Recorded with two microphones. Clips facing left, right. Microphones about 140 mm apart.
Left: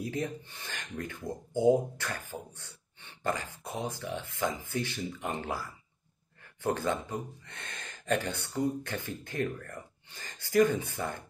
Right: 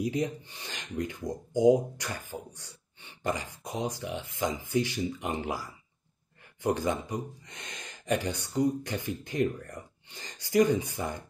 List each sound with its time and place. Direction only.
0.0 s speech: 15° right (ahead or behind)